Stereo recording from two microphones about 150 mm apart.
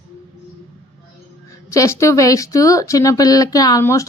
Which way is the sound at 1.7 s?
20° left (ahead or behind).